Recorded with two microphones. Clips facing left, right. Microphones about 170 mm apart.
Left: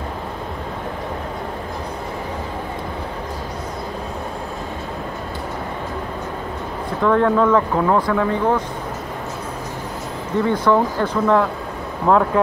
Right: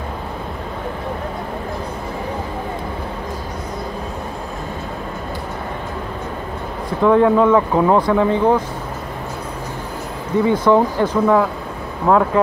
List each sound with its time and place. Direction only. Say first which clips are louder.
7.0 s speech: right 3 dB; 15° right (ahead or behind)
10.4 s speech: right 3 dB; 15° right (ahead or behind)
12.1 s speech: right 1 dB; centre (ahead or behind)